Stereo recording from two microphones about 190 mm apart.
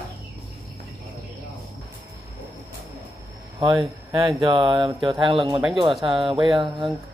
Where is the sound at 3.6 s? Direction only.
20° right (ahead or behind).